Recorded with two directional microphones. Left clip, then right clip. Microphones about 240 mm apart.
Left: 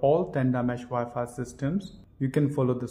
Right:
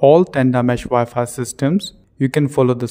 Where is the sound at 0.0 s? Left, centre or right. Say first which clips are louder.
Right 12 dB; right.